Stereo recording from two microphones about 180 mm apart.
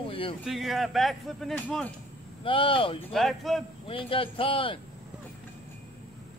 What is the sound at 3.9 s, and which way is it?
Speech, 30° left (ahead or behind).